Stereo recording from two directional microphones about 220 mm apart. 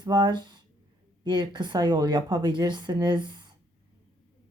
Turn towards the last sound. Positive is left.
turn(degrees=-20)  # may be behind; listen again after turning